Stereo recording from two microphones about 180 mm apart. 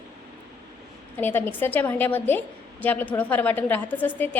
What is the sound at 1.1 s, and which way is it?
A woman's voice, 10° left (ahead or behind).